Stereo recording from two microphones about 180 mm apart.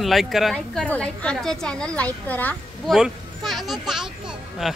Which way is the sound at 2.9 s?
Centre (ahead or behind).